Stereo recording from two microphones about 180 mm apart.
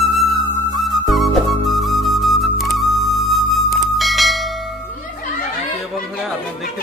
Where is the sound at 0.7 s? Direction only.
Centre (ahead or behind).